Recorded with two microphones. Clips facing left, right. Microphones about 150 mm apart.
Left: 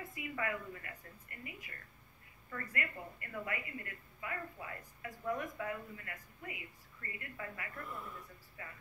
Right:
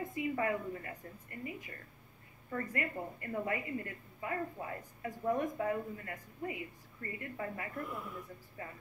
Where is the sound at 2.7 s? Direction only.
30° right (ahead or behind).